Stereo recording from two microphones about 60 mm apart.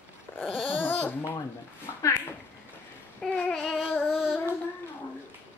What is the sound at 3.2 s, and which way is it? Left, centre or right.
Child singing, centre.